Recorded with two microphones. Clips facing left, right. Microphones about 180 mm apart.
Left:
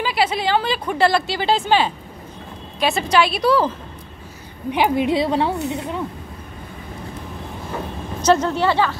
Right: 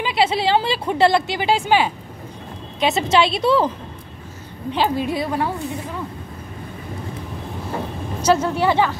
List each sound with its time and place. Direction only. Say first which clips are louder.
0.0 s a woman's voice: right 1 dB; 25° right (ahead or behind)
2.8 s a woman's voice: right 1 dB; 20° right (ahead or behind)
4.6 s a woman's voice: left 3 dB; 15° left (ahead or behind)
8.2 s speech: left 1 dB; 10° right (ahead or behind)